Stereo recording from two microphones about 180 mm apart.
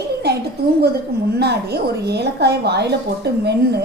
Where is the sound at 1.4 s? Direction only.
65° right (ahead or behind).